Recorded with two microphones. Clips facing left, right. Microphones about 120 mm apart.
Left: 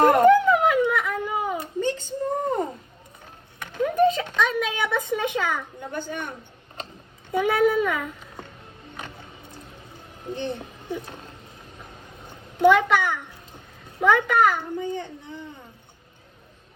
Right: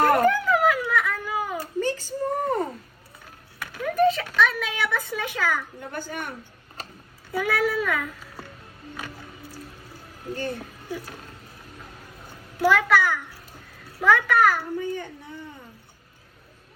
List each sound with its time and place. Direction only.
0.0 s a sound: 20° left (ahead or behind)
7.3 s a child's voice: 20° left (ahead or behind)
10.5 s speech: 20° left (ahead or behind)
12.6 s a child's voice: 20° left (ahead or behind)